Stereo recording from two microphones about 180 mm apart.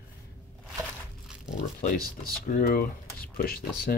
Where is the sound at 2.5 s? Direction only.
50° left (ahead or behind).